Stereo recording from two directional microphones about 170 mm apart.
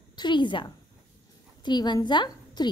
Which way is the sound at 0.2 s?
25° left (ahead or behind).